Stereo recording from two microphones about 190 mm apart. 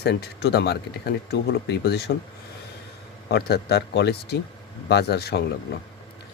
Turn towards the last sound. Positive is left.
turn(degrees=60)  # may be behind; listen again after turning